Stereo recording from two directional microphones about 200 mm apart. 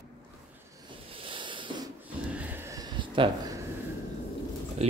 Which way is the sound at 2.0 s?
5° right (ahead or behind).